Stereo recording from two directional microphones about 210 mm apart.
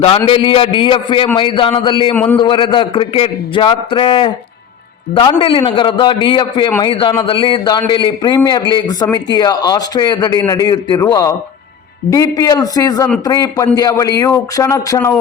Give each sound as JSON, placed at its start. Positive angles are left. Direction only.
{"t": 0.3, "sound": "a man's voice", "side_deg": 25}
{"t": 2.1, "sound": "a man's voice", "side_deg": 10}
{"t": 2.4, "sound": "a man's voice", "side_deg": 25}